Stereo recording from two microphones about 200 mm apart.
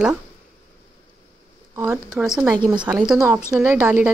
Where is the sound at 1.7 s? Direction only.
15° right (ahead or behind).